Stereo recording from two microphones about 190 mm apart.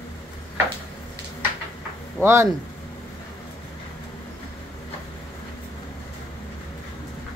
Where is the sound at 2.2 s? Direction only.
15° right (ahead or behind).